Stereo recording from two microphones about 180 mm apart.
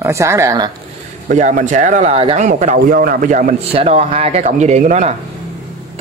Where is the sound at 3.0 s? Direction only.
55° right (ahead or behind).